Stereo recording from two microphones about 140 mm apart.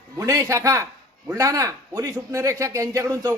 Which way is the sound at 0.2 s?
25° right (ahead or behind).